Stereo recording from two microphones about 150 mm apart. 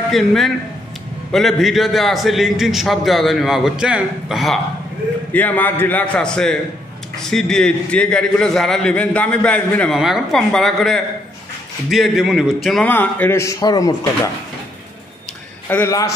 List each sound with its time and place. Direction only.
0.1 s a man's voice: centre (ahead or behind)
5.3 s a man's voice: 10° left (ahead or behind)
9.9 s a man's voice: centre (ahead or behind)
12.8 s speech: 10° left (ahead or behind)
15.7 s speech: 20° left (ahead or behind)